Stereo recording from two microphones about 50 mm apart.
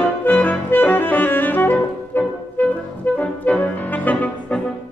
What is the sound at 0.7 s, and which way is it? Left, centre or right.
Music, left.